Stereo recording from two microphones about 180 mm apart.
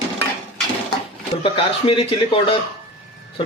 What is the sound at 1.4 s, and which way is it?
A man's voice, 30° left (ahead or behind).